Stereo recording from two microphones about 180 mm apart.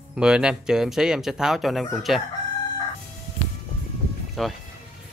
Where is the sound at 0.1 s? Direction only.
5° right (ahead or behind).